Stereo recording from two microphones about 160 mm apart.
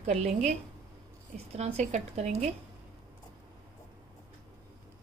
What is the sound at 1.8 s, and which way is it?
Speech, 45° right (ahead or behind).